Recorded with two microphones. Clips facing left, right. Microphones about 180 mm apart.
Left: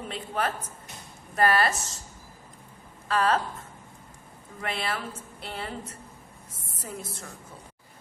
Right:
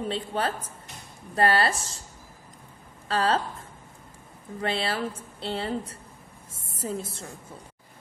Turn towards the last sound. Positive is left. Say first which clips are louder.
# right 6 dB
turn(degrees=-30)  # may be behind; listen again after turning